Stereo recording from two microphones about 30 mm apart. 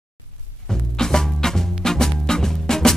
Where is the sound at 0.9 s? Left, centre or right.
Centre.